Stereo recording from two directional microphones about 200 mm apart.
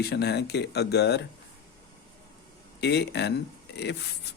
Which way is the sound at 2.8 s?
55° left (ahead or behind).